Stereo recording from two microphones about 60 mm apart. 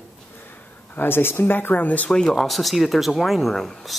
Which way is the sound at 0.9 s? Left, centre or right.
Left.